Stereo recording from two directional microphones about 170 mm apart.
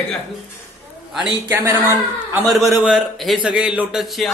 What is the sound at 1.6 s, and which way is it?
Speech, 15° right (ahead or behind).